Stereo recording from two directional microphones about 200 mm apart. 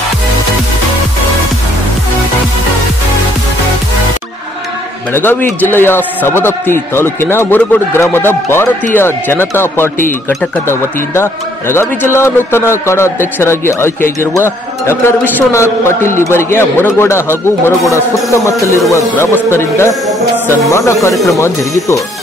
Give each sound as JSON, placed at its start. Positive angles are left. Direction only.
{"t": 5.1, "sound": "speech", "side_deg": 10}